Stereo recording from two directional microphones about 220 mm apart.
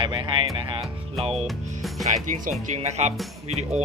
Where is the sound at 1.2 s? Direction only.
30° right (ahead or behind).